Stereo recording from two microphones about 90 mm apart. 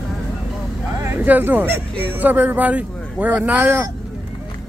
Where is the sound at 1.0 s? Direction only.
20° right (ahead or behind).